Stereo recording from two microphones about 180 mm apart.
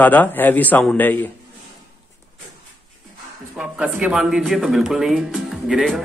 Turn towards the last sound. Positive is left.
turn(degrees=0)  # may be behind; listen again after turning